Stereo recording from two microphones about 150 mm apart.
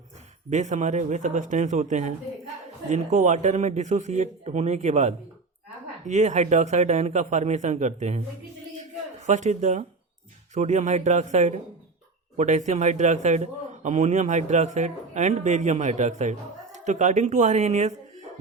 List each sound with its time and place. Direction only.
0.5 s a man's voice: 50° right (ahead or behind)
9.2 s a man's voice: 50° right (ahead or behind)